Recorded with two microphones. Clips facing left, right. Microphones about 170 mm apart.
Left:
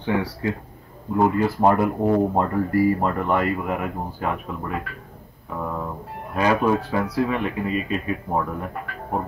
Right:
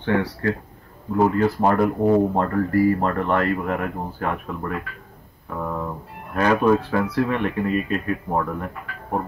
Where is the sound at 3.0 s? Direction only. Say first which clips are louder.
Right 1 dB; 10° left (ahead or behind).